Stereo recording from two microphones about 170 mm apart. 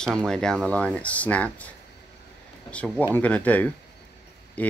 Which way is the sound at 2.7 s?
5° left (ahead or behind).